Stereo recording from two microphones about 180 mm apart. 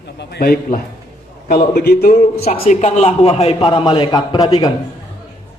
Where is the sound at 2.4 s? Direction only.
40° left (ahead or behind).